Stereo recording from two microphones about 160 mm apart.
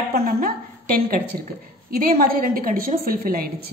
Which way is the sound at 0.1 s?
70° right (ahead or behind).